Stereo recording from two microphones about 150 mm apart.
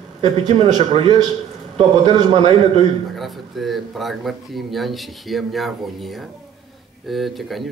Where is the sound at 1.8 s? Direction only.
40° right (ahead or behind).